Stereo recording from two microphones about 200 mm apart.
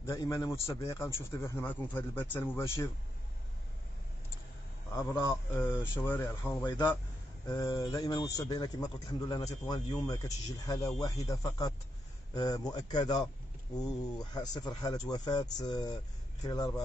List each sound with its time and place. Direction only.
0.0 s speech: 20° left (ahead or behind)
4.9 s speech: 15° left (ahead or behind)